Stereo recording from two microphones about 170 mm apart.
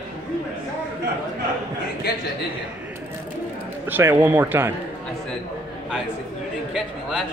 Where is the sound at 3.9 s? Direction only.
10° right (ahead or behind).